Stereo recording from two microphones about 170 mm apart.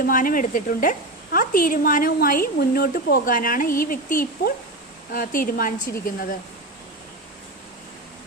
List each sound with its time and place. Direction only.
0.0 s a woman's voice: 55° left (ahead or behind)